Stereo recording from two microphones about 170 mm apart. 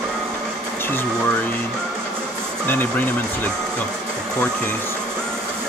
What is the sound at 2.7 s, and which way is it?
Speech, 10° left (ahead or behind).